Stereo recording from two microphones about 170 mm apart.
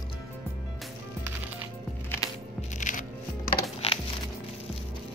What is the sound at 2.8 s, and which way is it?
Music, 50° left (ahead or behind).